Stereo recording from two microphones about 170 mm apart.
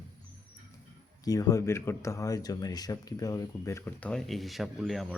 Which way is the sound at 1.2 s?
20° left (ahead or behind).